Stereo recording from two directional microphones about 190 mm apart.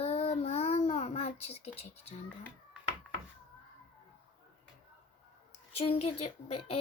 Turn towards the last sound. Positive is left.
turn(degrees=30)  # may be behind; listen again after turning